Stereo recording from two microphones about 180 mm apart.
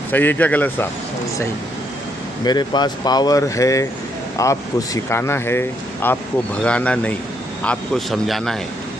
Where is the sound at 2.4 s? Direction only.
25° left (ahead or behind).